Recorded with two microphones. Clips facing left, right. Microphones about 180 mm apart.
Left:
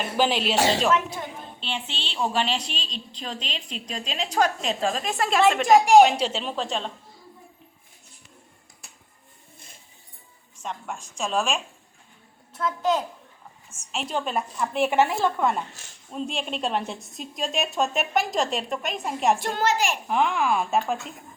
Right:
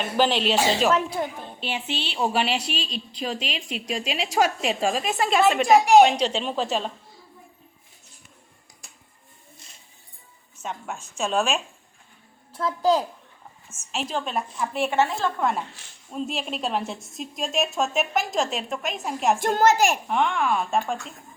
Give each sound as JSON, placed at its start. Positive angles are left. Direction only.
{"t": 0.0, "sound": "a woman's voice", "side_deg": 5}
{"t": 0.9, "sound": "speech", "side_deg": -35}
{"t": 1.6, "sound": "a woman's voice", "side_deg": -10}
{"t": 10.6, "sound": "a woman's voice", "side_deg": -5}
{"t": 12.5, "sound": "a child's voice", "side_deg": -35}
{"t": 13.7, "sound": "a woman's voice", "side_deg": 0}
{"t": 14.8, "sound": "a woman's voice", "side_deg": 10}
{"t": 15.4, "sound": "a woman's voice", "side_deg": 0}
{"t": 19.4, "sound": "a child's voice", "side_deg": -45}
{"t": 20.1, "sound": "a woman's voice", "side_deg": 0}